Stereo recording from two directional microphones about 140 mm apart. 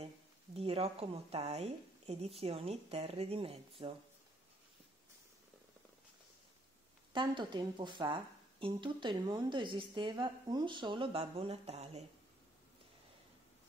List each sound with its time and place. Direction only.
0.6 s a woman's voice: 45° right (ahead or behind)
7.1 s a woman's voice: 35° right (ahead or behind); by 12.1 s 50° right (ahead or behind)